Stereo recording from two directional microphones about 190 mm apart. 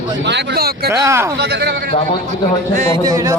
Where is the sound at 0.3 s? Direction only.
60° right (ahead or behind).